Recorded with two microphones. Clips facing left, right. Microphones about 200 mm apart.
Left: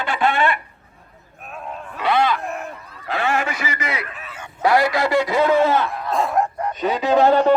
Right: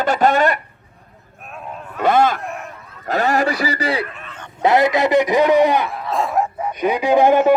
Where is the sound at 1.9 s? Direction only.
45° right (ahead or behind).